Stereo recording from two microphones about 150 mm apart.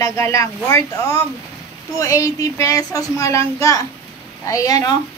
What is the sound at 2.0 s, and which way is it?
Speech, 20° left (ahead or behind).